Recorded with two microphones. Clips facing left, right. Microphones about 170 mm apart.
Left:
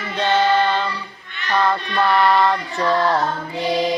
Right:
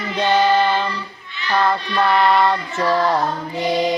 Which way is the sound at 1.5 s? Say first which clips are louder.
Right 1 dB; 5° right (ahead or behind).